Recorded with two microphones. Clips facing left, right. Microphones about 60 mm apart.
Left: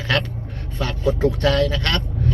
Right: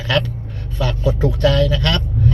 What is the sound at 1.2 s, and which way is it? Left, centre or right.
Speech, left.